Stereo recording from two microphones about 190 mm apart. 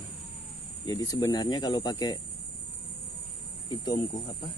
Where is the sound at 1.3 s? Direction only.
25° left (ahead or behind).